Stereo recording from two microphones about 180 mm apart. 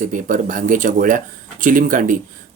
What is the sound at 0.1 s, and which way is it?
Speech, 50° right (ahead or behind).